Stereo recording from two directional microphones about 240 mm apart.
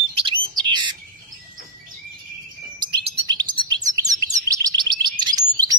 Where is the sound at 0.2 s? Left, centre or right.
Centre.